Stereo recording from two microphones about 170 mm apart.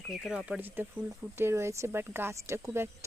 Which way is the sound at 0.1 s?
5° right (ahead or behind).